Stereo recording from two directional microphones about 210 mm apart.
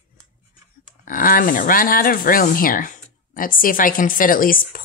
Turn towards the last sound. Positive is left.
turn(degrees=40)  # may be behind; listen again after turning